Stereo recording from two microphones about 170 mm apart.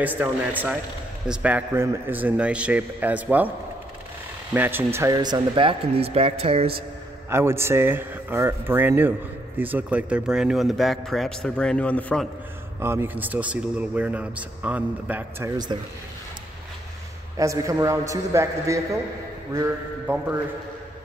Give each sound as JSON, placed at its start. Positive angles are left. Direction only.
{"t": 0.0, "sound": "a man's voice", "side_deg": -10}
{"t": 4.6, "sound": "speech", "side_deg": -10}
{"t": 7.2, "sound": "a man's voice", "side_deg": -15}
{"t": 12.8, "sound": "a man's voice", "side_deg": -15}
{"t": 17.4, "sound": "a man's voice", "side_deg": -20}